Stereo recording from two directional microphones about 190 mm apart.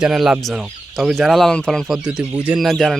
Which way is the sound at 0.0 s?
5° right (ahead or behind).